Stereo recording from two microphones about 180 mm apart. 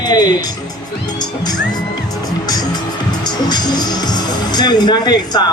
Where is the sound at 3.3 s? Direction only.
25° left (ahead or behind).